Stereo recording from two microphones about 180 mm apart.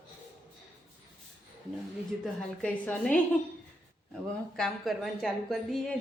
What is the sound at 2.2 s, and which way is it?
Speech, 5° left (ahead or behind).